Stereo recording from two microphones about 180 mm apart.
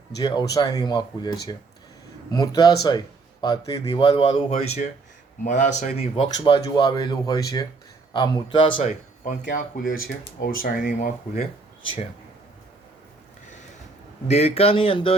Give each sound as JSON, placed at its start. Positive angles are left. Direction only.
{"t": 0.2, "sound": "speech", "side_deg": 20}
{"t": 6.2, "sound": "speech", "side_deg": 25}
{"t": 8.9, "sound": "speech", "side_deg": 45}
{"t": 14.3, "sound": "speech", "side_deg": 35}